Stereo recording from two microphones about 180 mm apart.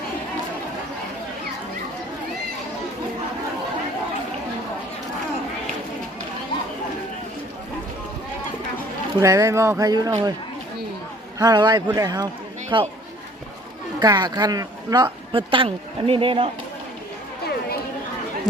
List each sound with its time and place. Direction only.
9.2 s speech: 15° right (ahead or behind)
11.3 s speech: 20° right (ahead or behind)
14.0 s speech: 20° right (ahead or behind)